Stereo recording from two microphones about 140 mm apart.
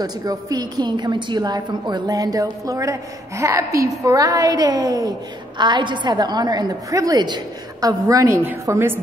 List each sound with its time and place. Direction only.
0.0 s a woman's voice: 25° right (ahead or behind)